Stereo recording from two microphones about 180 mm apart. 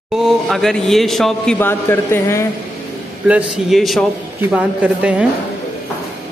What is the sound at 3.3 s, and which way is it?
A man's voice, 5° right (ahead or behind).